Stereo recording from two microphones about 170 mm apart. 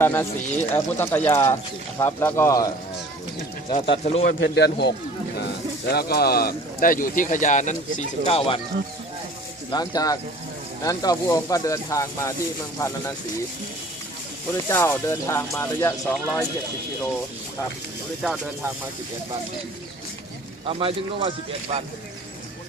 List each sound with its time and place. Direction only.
0.0 s speech: 10° left (ahead or behind)
3.7 s speech: 30° left (ahead or behind)
4.3 s a man's voice: 75° left (ahead or behind)
5.9 s speech: 65° left (ahead or behind); by 8.6 s 35° left (ahead or behind)
9.7 s speech: 20° left (ahead or behind)
14.7 s speech: 10° left (ahead or behind)
18.2 s speech: centre (ahead or behind)
20.7 s speech: 35° right (ahead or behind)